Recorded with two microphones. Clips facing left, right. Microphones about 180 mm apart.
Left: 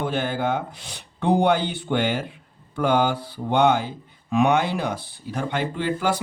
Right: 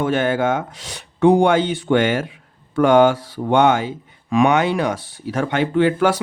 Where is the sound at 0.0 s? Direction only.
80° right.